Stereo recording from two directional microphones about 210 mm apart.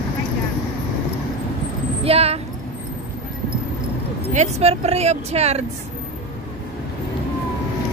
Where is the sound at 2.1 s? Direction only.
30° right (ahead or behind).